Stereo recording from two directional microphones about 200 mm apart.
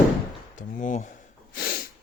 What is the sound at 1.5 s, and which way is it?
Snort, 50° left (ahead or behind).